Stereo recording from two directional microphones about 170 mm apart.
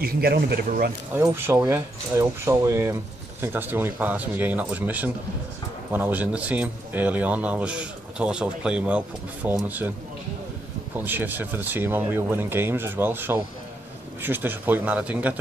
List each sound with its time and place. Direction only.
0.0 s speech: 65° right (ahead or behind)
1.1 s speech: 15° right (ahead or behind)
11.0 s speech: 10° right (ahead or behind)